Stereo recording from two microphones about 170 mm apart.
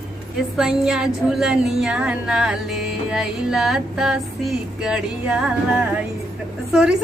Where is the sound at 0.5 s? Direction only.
5° right (ahead or behind).